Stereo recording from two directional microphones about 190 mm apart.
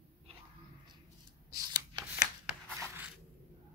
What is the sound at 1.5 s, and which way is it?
Shuffling cards, 20° right (ahead or behind).